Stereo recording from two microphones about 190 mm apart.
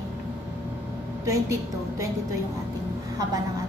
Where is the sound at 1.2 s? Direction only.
15° right (ahead or behind).